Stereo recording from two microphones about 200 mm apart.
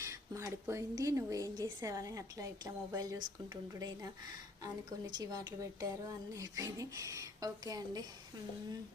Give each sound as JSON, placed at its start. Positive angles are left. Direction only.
{"t": 0.0, "sound": "a woman's voice", "side_deg": -15}
{"t": 5.1, "sound": "a woman's voice", "side_deg": -20}